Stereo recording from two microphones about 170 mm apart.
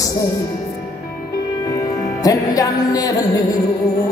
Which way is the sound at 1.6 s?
20° left (ahead or behind).